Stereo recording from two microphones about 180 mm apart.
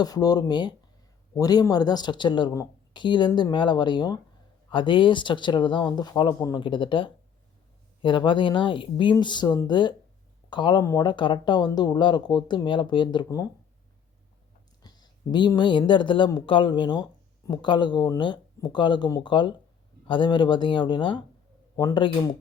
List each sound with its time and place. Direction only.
0.0 s speech: 20° left (ahead or behind)
14.8 s speech: 25° left (ahead or behind)